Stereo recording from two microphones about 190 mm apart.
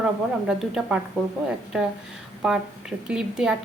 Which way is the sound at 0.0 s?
5° right (ahead or behind).